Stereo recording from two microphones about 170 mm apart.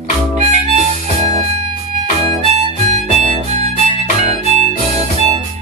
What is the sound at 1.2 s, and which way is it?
Music, 40° right (ahead or behind).